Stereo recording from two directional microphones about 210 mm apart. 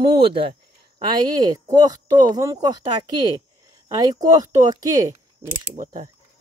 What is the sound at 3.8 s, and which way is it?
Speech, 20° right (ahead or behind).